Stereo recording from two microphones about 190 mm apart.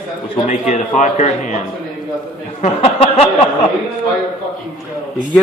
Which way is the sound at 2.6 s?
35° left (ahead or behind).